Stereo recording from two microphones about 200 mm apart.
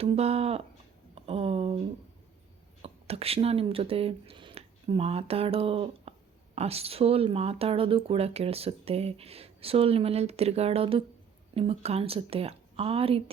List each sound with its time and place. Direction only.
0.0 s speech: 30° right (ahead or behind)
2.8 s speech: 30° right (ahead or behind)